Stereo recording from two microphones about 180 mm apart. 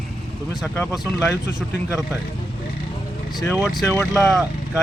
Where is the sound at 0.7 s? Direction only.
15° left (ahead or behind).